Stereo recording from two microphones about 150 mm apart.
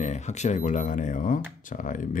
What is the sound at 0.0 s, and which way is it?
Speech, 50° left (ahead or behind).